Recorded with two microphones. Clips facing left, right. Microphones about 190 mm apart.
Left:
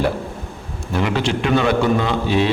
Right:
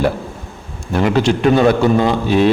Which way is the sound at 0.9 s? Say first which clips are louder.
Right 5 dB; 45° right (ahead or behind).